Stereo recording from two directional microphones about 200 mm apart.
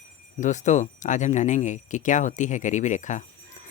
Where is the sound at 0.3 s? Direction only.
40° left (ahead or behind).